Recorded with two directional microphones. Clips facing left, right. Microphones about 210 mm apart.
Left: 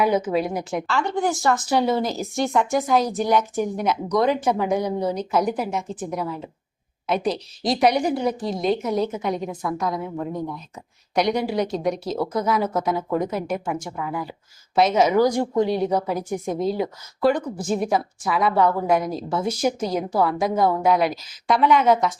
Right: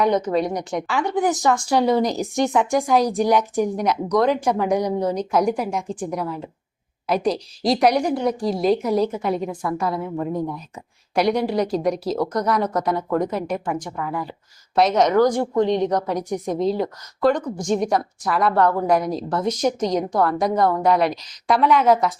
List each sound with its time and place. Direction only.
0.0 s speech: 5° left (ahead or behind)
0.9 s speech: 15° right (ahead or behind)
2.4 s speech: centre (ahead or behind)